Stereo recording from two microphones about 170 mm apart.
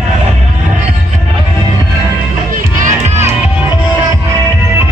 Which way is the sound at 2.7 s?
50° right (ahead or behind).